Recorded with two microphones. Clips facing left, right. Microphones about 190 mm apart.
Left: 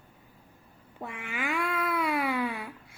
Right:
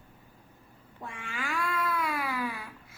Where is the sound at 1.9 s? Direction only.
20° left (ahead or behind).